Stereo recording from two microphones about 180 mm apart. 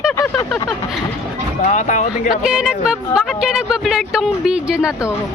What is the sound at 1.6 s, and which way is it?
Speech, 40° left (ahead or behind).